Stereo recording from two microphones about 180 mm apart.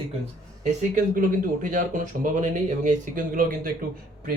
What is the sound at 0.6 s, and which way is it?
Speech, 45° right (ahead or behind).